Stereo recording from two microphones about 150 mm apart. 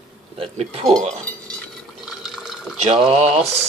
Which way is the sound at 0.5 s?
40° right (ahead or behind).